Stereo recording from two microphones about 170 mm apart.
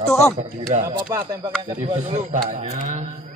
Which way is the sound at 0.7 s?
40° right (ahead or behind).